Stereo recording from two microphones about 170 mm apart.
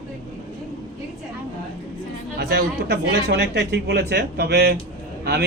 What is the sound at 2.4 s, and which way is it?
Speech, 75° right (ahead or behind).